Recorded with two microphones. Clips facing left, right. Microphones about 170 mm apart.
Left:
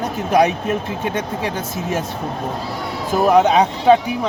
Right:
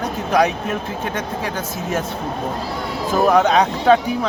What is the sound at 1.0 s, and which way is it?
Speech, 20° left (ahead or behind).